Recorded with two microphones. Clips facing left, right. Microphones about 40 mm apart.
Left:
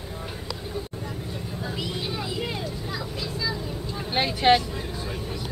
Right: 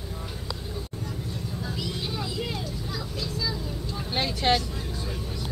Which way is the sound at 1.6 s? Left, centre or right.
Centre.